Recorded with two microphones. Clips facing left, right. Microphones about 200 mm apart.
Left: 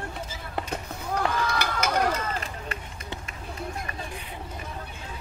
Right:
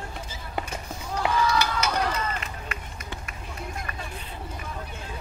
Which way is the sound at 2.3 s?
35° left (ahead or behind).